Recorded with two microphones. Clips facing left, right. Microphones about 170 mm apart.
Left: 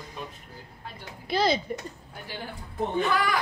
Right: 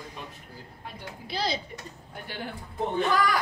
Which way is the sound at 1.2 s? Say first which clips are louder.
Left 7 dB; 50° left (ahead or behind).